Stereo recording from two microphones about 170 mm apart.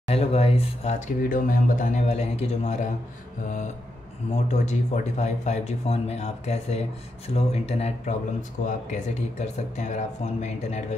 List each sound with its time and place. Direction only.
0.0 s speech: 35° left (ahead or behind)
4.3 s speech: 45° left (ahead or behind)